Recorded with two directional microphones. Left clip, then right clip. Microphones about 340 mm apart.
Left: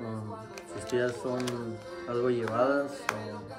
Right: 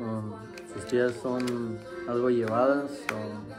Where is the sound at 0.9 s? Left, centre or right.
Centre.